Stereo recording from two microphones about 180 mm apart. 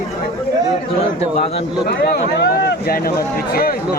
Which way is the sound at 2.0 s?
60° left (ahead or behind).